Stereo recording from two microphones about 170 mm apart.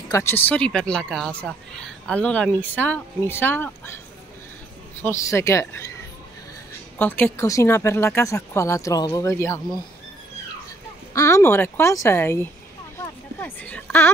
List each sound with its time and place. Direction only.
0.1 s speech: 15° left (ahead or behind)
5.0 s speech: 15° left (ahead or behind)
7.0 s speech: 10° left (ahead or behind)
11.1 s speech: 15° left (ahead or behind)
12.9 s a sound: 10° left (ahead or behind)